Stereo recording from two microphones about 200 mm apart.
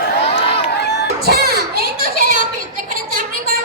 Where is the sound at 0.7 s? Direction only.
55° left (ahead or behind).